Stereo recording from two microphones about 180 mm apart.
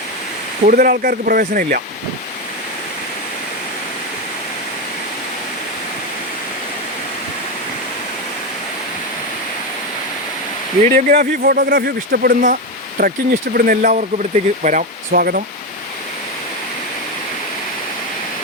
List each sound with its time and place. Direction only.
0.7 s speech: 55° right (ahead or behind)
10.8 s speech: 55° right (ahead or behind)